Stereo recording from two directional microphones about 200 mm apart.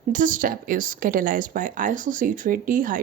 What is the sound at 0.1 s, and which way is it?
Speech, 40° right (ahead or behind).